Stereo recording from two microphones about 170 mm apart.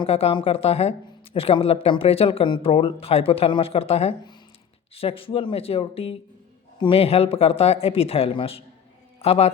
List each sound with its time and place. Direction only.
0.0 s a man's voice: 35° left (ahead or behind)